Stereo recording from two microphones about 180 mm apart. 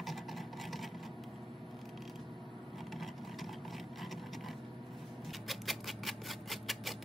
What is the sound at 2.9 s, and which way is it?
Vehicle, centre (ahead or behind).